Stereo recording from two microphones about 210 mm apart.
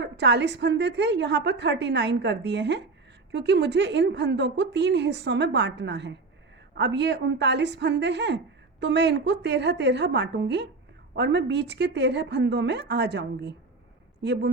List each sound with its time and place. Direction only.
0.0 s a woman's voice: 55° right (ahead or behind)